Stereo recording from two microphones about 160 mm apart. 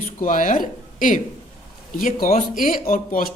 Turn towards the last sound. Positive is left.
turn(degrees=60)  # may be behind; listen again after turning